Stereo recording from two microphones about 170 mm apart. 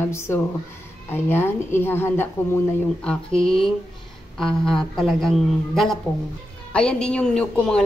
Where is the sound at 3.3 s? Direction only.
35° left (ahead or behind).